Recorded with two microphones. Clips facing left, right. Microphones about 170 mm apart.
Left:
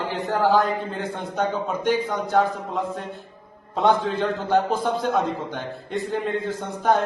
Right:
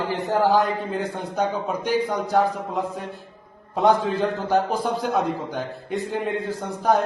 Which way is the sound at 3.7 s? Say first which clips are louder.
Right 1 dB; centre (ahead or behind).